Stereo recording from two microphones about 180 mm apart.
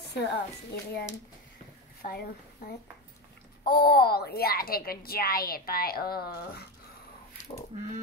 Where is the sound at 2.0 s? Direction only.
55° left (ahead or behind).